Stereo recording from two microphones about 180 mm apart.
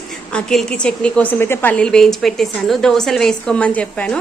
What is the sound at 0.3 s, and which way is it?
A woman's voice, 5° left (ahead or behind).